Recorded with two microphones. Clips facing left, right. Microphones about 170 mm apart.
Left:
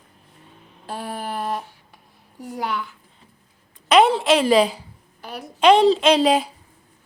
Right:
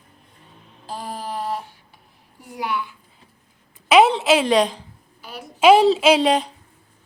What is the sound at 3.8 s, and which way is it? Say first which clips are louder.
A woman's voice: right 1 dB; centre (ahead or behind).